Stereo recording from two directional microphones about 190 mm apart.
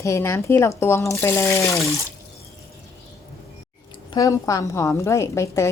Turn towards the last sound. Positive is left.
turn(degrees=15)  # may be behind; listen again after turning